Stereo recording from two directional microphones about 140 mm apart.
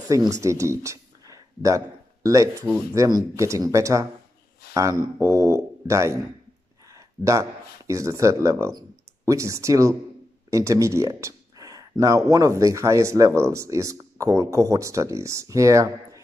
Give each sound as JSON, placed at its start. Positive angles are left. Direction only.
{"t": 0.0, "sound": "speech", "side_deg": -25}